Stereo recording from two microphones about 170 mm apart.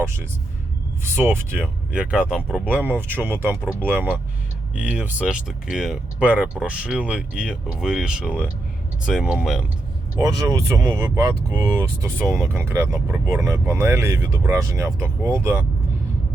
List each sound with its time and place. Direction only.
0.0 s speech: 15° right (ahead or behind)
10.2 s speech: 20° right (ahead or behind)